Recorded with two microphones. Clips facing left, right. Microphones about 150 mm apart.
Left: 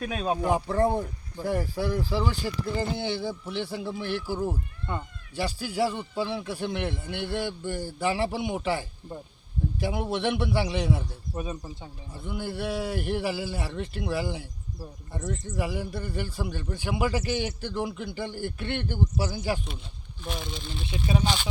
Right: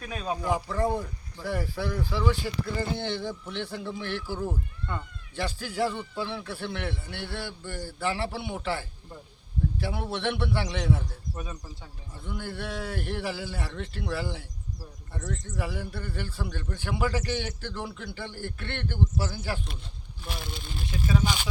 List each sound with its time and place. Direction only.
0.0 s speech: 55° left (ahead or behind)
1.8 s speech: 30° left (ahead or behind)
3.0 s a man's voice: 10° left (ahead or behind)
12.1 s a man's voice: 10° left (ahead or behind)
20.2 s speech: 5° right (ahead or behind)
21.1 s speech: 20° left (ahead or behind)